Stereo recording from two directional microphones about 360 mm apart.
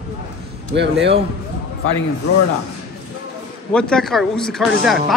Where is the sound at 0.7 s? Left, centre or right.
Right.